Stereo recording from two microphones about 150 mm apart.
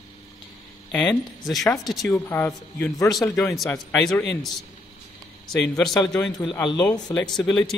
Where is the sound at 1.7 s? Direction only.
25° left (ahead or behind).